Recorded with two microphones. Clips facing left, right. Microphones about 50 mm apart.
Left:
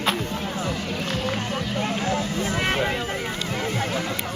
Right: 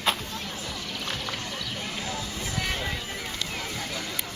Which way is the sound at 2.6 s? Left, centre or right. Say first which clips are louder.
Left 7 dB; left.